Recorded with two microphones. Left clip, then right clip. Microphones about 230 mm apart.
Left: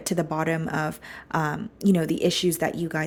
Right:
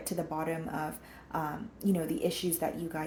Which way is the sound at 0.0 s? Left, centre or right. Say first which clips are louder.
Left 8 dB; left.